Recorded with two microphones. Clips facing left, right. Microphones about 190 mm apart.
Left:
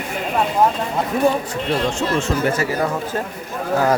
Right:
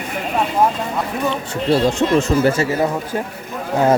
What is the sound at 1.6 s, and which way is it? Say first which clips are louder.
Speech: right 7 dB; 35° right (ahead or behind).